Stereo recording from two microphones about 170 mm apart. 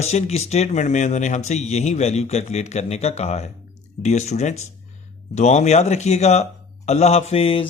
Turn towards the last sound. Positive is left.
turn(degrees=35)  # may be behind; listen again after turning